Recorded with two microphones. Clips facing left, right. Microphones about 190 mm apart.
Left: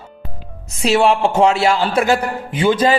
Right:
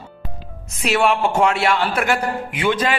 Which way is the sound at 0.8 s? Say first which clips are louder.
Left 4 dB; 30° left (ahead or behind).